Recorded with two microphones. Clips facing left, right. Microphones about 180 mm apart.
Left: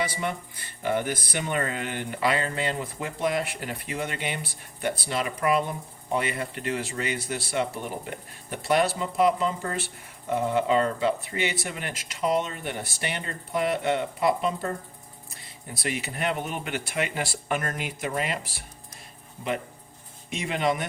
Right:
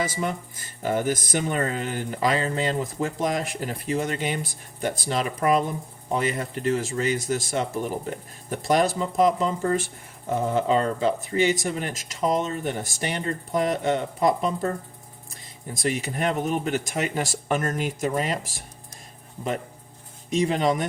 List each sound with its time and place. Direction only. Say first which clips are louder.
0.0 s speech: right 2 dB; 40° right (ahead or behind)
15.7 s speech: right 5 dB; 45° right (ahead or behind)
20.3 s speech: right 5 dB; 40° right (ahead or behind)